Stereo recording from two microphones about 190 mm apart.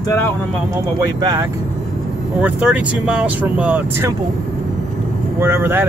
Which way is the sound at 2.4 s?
5° right (ahead or behind).